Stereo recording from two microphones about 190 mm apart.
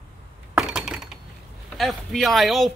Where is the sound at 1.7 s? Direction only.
Centre (ahead or behind).